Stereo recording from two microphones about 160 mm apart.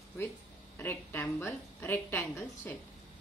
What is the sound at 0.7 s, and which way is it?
A woman's voice, 15° left (ahead or behind).